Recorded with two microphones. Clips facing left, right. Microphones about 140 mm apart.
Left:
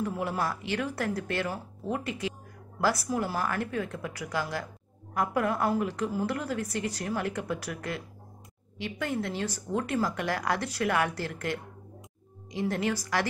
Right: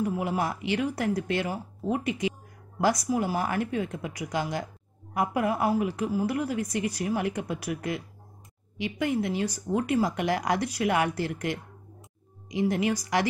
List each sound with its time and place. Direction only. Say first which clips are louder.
0.0 s a woman's voice: right 3 dB; 15° right (ahead or behind)